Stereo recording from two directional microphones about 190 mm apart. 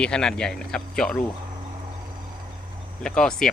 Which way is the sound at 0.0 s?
5° left (ahead or behind).